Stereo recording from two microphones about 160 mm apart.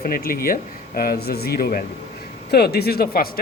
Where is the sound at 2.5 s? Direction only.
90° left; by 3.2 s 75° left (ahead or behind).